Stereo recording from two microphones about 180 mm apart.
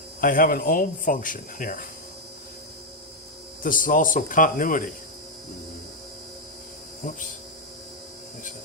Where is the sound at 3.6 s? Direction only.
50° left (ahead or behind).